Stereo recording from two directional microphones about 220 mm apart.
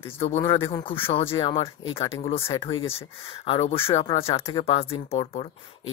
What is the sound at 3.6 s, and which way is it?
Speech, 25° left (ahead or behind).